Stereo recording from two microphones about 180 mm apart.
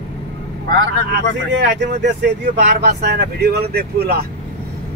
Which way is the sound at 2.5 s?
65° right (ahead or behind).